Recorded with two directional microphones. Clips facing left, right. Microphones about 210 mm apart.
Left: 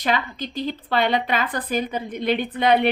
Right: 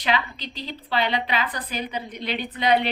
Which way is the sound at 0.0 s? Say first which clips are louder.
Left 2 dB; 50° left (ahead or behind).